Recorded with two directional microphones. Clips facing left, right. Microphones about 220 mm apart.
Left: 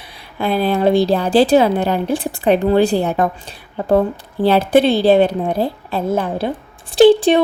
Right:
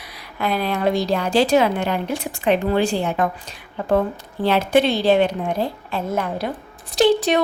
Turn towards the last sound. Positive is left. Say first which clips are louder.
# left 7 dB
turn(degrees=30)  # may be behind; listen again after turning